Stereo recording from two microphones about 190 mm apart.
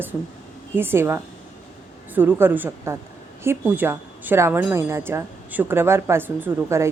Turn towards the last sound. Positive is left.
turn(degrees=-15)  # may be behind; listen again after turning